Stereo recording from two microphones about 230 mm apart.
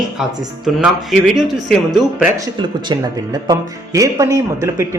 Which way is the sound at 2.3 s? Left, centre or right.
Centre.